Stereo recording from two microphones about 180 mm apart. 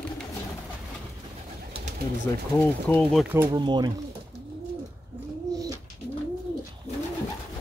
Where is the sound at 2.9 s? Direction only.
5° left (ahead or behind).